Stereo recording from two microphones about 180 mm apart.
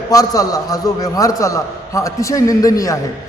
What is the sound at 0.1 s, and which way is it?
A man's voice, 20° left (ahead or behind).